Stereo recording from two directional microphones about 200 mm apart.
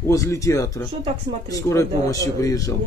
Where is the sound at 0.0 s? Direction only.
15° left (ahead or behind).